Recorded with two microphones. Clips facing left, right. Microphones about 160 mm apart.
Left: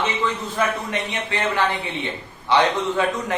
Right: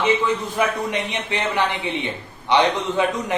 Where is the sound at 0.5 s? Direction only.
15° right (ahead or behind).